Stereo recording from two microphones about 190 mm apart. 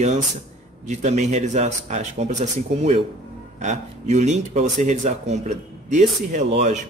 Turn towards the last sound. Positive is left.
turn(degrees=-40)  # may be behind; listen again after turning